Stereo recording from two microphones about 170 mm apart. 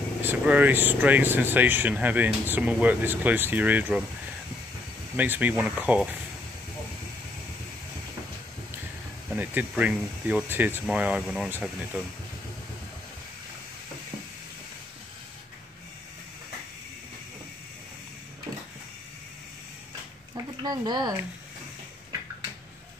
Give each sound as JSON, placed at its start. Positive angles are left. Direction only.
{"t": 0.2, "sound": "speech", "side_deg": -10}
{"t": 5.1, "sound": "speech", "side_deg": -10}
{"t": 9.3, "sound": "speech", "side_deg": -10}
{"t": 20.6, "sound": "speech", "side_deg": -25}